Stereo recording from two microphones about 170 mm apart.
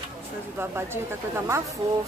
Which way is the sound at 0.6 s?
15° right (ahead or behind).